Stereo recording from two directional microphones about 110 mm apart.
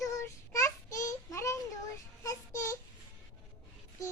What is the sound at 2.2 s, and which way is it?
Child singing, 30° left (ahead or behind).